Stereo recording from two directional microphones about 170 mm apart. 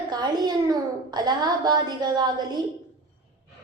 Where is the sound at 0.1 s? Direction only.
25° right (ahead or behind).